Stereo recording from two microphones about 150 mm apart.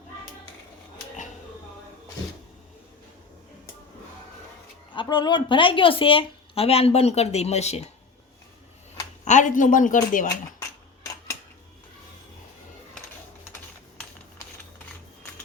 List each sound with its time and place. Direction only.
4.9 s speech: 30° left (ahead or behind); by 7.9 s 45° left (ahead or behind)
9.2 s speech: 55° left (ahead or behind)